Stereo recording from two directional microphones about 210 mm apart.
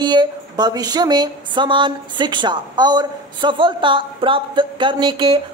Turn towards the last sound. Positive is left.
turn(degrees=-20)  # may be behind; listen again after turning